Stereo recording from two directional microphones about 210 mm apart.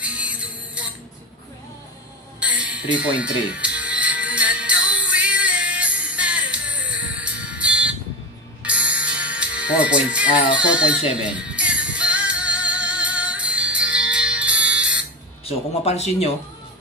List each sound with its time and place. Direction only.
0.0 s music: 5° right (ahead or behind)
2.4 s music: 5° right (ahead or behind)
15.4 s speech: 30° left (ahead or behind)